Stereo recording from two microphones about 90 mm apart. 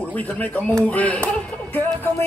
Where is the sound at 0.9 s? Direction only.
15° left (ahead or behind).